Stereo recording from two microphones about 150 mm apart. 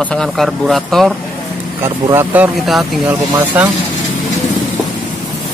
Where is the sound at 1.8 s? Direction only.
15° right (ahead or behind).